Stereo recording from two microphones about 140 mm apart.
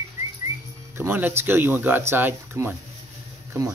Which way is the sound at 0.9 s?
15° right (ahead or behind).